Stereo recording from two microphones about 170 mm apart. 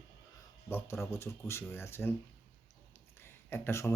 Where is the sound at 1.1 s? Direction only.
15° left (ahead or behind).